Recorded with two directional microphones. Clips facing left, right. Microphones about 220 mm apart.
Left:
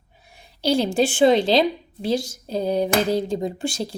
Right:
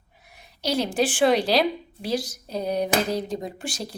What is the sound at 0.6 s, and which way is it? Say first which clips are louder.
A woman's voice: left 4 dB; 30° left (ahead or behind).